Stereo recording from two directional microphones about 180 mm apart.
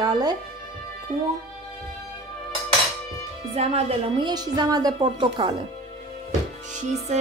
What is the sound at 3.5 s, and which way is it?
Music, 35° right (ahead or behind).